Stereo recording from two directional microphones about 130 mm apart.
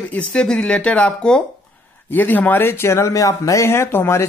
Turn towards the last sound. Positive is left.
turn(degrees=20)  # may be behind; listen again after turning